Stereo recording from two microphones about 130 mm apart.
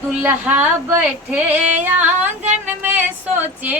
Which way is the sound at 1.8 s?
15° right (ahead or behind).